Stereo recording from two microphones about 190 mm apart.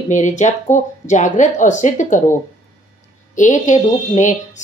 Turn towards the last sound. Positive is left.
turn(degrees=40)  # may be behind; listen again after turning